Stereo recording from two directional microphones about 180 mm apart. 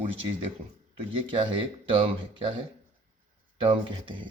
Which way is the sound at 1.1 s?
30° right (ahead or behind).